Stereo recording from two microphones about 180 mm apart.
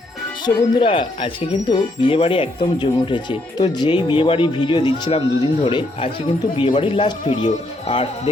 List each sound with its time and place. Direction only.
0.4 s a man's voice: 30° left (ahead or behind)